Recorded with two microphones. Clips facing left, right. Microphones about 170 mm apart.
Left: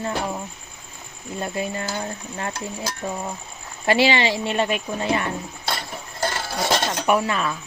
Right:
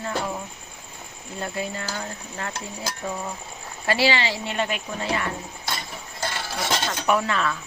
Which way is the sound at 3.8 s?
20° left (ahead or behind).